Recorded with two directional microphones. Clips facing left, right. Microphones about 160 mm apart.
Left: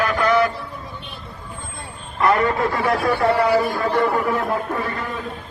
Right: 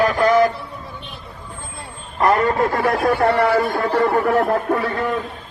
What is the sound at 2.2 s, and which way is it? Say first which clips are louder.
A man's voice: right 2 dB; 40° right (ahead or behind).